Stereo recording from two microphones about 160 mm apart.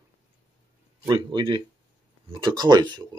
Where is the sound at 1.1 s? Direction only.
30° right (ahead or behind).